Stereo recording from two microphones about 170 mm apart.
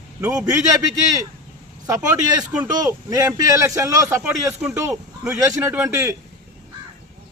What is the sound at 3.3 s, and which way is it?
A man's voice, 15° right (ahead or behind).